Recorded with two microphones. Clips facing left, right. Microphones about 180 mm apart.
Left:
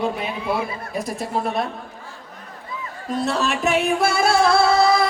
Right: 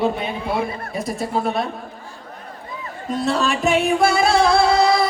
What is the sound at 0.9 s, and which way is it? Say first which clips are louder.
Music: right 2 dB; centre (ahead or behind).